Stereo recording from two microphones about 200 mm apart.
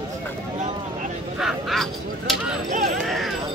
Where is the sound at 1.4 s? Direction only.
Centre (ahead or behind).